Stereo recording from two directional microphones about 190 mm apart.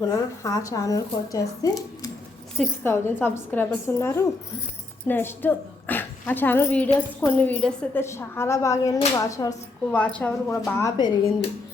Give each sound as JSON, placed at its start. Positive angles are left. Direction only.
{"t": 0.4, "sound": "a woman's voice", "side_deg": 20}
{"t": 10.0, "sound": "a woman's voice", "side_deg": 5}